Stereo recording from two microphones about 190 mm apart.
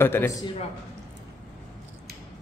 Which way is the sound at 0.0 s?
10° left (ahead or behind).